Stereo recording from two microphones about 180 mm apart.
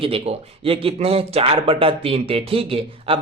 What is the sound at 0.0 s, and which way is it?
Speech, 30° right (ahead or behind).